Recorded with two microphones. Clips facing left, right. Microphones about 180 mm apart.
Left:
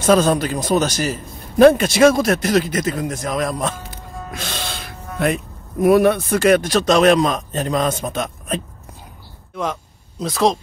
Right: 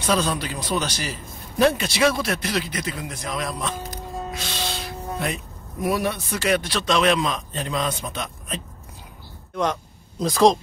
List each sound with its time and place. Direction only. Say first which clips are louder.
0.0 s a man's voice: left 8 dB; 45° left (ahead or behind)
3.7 s music: right 3 dB; 40° right (ahead or behind)
4.3 s music: left 5 dB; 50° left (ahead or behind)
5.2 s a man's voice: left 8 dB; 55° left (ahead or behind)
9.6 s speech: right 1 dB; 5° left (ahead or behind)